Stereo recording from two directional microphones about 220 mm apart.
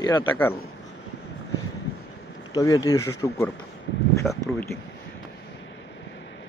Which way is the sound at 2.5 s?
15° left (ahead or behind).